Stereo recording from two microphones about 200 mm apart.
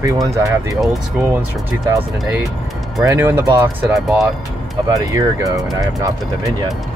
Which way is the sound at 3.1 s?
15° right (ahead or behind).